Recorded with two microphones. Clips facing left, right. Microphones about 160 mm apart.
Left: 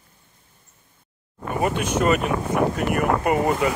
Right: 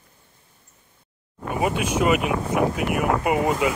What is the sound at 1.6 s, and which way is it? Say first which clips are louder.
Speech: even; 5° right (ahead or behind).